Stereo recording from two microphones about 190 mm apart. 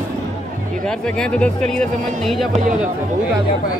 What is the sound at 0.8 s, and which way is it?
Speech, 5° left (ahead or behind).